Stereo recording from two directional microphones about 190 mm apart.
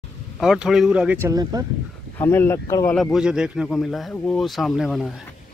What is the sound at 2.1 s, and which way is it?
Speech, 15° left (ahead or behind).